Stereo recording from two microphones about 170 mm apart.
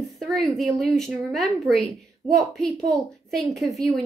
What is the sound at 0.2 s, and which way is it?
A woman's voice, centre (ahead or behind).